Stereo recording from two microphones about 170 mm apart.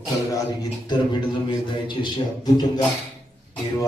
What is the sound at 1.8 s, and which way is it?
A man's voice, 25° left (ahead or behind).